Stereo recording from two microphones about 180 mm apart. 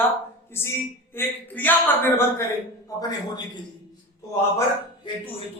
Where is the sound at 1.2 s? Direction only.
10° left (ahead or behind).